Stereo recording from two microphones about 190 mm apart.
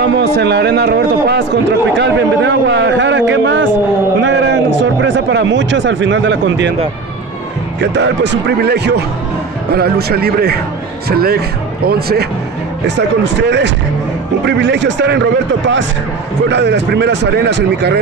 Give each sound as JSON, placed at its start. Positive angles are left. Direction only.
{"t": 0.0, "sound": "a man's voice", "side_deg": -60}
{"t": 7.8, "sound": "a man's voice", "side_deg": -65}
{"t": 16.4, "sound": "a man's voice", "side_deg": -65}